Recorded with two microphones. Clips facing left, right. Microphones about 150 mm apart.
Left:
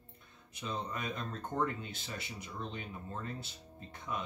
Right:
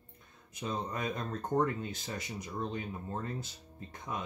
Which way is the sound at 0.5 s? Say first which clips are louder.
Right 3 dB; 45° right (ahead or behind).